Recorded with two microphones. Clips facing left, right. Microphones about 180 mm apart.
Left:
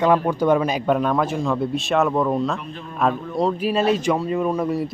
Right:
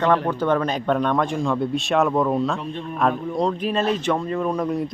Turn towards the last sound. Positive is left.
turn(degrees=5)  # may be behind; listen again after turning